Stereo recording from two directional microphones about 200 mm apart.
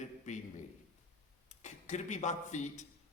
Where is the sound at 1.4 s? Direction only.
35° left (ahead or behind).